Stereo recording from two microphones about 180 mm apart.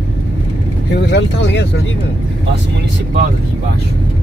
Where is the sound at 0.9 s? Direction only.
75° left (ahead or behind).